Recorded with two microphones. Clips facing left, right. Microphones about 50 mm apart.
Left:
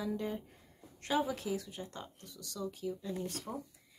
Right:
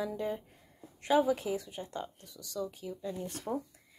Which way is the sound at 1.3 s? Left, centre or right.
Right.